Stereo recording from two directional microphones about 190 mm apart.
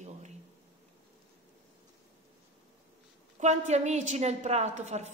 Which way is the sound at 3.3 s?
35° right (ahead or behind).